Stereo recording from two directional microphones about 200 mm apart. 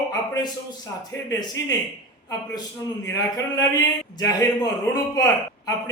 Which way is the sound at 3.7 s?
20° left (ahead or behind).